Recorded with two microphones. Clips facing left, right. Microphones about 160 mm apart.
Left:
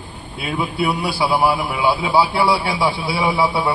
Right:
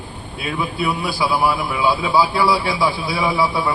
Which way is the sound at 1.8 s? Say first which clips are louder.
Even; 20° left (ahead or behind).